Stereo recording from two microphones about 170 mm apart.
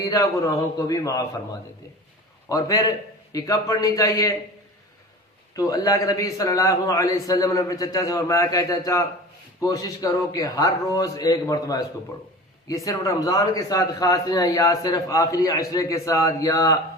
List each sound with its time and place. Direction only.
0.0 s a man's voice: 20° left (ahead or behind)
2.5 s a man's voice: 20° left (ahead or behind)
5.5 s a man's voice: 20° left (ahead or behind)